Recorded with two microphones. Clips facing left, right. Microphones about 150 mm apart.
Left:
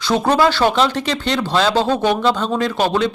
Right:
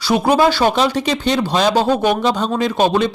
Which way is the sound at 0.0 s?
10° right (ahead or behind).